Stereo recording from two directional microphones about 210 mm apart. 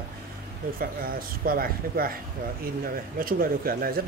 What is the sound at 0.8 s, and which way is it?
Speech, 45° right (ahead or behind).